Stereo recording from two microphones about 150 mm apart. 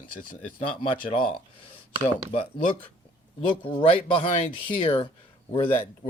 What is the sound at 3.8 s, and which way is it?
Speech, 35° left (ahead or behind).